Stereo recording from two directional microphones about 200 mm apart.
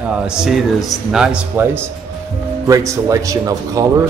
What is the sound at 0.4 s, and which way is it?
A man's voice, centre (ahead or behind).